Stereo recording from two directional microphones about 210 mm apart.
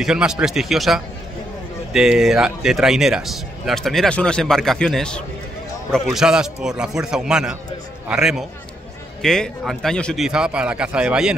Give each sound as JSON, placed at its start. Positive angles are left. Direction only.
{"t": 0.0, "sound": "a man's voice", "side_deg": -5}